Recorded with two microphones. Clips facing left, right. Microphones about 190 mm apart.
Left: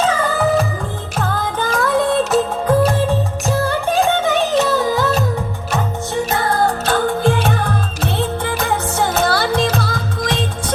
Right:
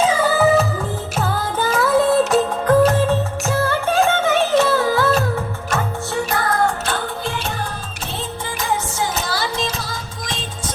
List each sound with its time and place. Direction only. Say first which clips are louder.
0.0 s music: right 1 dB; 10° right (ahead or behind)
2.6 s music: right 3 dB; 10° left (ahead or behind)
6.3 s music: left 2 dB; 30° left (ahead or behind)
6.8 s music: left 8 dB; 45° left (ahead or behind)